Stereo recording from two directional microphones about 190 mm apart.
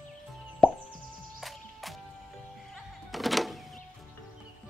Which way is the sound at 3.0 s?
Centre (ahead or behind).